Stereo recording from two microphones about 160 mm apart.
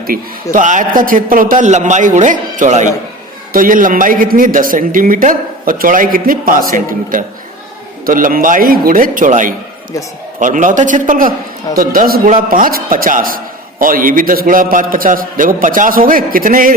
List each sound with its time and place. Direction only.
0.1 s a man's voice: 55° right (ahead or behind)